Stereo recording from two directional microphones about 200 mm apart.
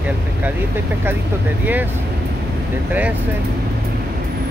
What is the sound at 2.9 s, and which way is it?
Speech, 10° right (ahead or behind).